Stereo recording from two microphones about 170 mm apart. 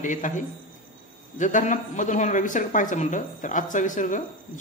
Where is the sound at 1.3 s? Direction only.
50° left (ahead or behind).